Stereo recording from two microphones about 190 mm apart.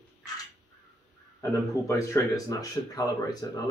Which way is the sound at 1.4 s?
15° left (ahead or behind).